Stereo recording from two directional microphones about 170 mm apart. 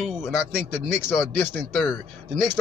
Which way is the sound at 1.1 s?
15° left (ahead or behind).